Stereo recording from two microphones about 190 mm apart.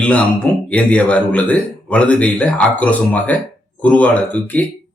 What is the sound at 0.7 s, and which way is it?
Speech, 5° left (ahead or behind).